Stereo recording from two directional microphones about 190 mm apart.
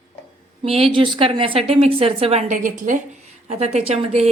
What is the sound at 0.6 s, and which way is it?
A woman's voice, 30° right (ahead or behind).